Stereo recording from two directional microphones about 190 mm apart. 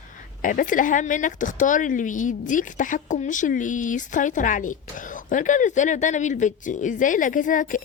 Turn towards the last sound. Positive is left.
turn(degrees=45)  # may be behind; listen again after turning